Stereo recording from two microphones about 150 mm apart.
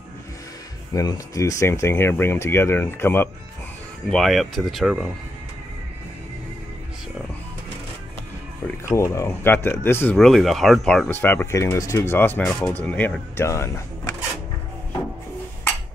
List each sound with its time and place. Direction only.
0.9 s speech: 20° left (ahead or behind)
4.1 s speech: centre (ahead or behind)
8.6 s speech: 20° left (ahead or behind)
10.1 s speech: centre (ahead or behind)
11.1 s speech: 15° left (ahead or behind)